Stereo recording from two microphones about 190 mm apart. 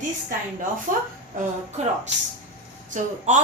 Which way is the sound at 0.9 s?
45° right (ahead or behind).